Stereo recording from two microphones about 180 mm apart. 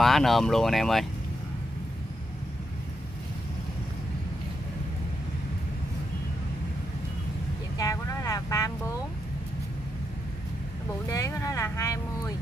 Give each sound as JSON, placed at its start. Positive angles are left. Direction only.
{"t": 0.0, "sound": "speech", "side_deg": 0}
{"t": 7.7, "sound": "vehicle", "side_deg": 20}
{"t": 11.1, "sound": "speech", "side_deg": 20}